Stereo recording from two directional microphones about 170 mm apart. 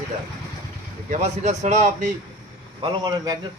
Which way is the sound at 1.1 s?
40° right (ahead or behind).